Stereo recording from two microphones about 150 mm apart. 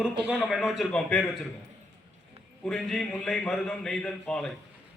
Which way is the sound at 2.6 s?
Centre (ahead or behind).